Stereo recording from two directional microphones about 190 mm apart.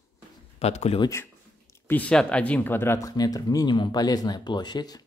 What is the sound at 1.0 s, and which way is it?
Speech, 15° left (ahead or behind).